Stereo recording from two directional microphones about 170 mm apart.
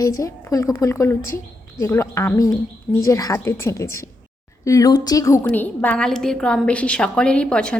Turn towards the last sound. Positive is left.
turn(degrees=5)  # may be behind; listen again after turning